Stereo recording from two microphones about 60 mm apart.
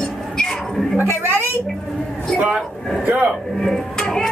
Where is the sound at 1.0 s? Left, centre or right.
Right.